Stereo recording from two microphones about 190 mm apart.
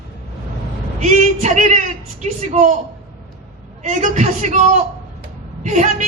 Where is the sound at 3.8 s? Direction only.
40° right (ahead or behind).